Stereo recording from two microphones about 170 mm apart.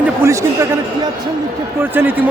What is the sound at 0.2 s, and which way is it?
Speech, 20° right (ahead or behind).